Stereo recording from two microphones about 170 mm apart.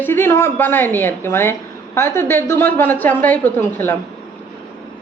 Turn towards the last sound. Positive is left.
turn(degrees=10)  # may be behind; listen again after turning